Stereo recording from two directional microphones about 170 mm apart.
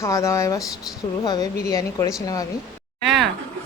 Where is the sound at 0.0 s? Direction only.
15° left (ahead or behind).